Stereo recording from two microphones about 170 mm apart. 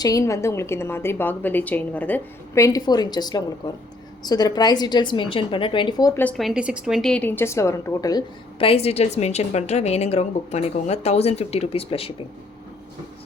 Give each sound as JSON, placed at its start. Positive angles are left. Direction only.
{"t": 0.0, "sound": "a woman's voice", "side_deg": 20}
{"t": 6.2, "sound": "a woman's voice", "side_deg": 0}